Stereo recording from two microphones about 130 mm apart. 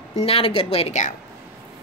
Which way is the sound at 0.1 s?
50° left (ahead or behind).